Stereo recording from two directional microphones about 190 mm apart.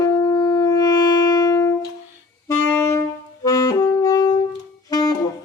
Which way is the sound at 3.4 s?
15° left (ahead or behind).